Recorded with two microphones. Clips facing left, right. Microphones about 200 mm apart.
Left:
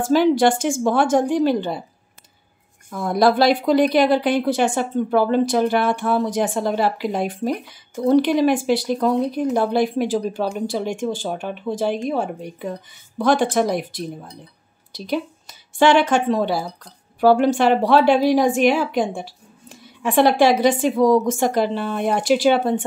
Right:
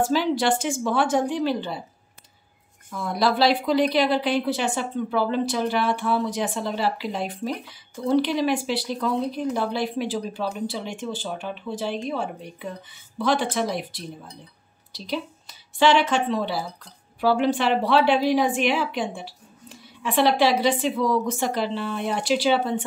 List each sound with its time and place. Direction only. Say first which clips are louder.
0.0 s a woman's voice: left 6 dB; 50° left (ahead or behind)
2.9 s a woman's voice: left 6 dB; 50° left (ahead or behind)